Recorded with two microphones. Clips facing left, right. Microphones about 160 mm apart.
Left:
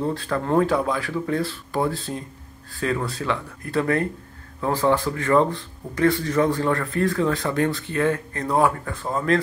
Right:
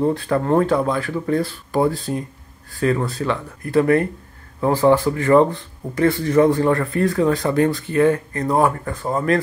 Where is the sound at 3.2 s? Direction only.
10° right (ahead or behind).